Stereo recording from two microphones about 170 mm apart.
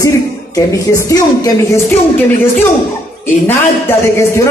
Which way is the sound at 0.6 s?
20° left (ahead or behind).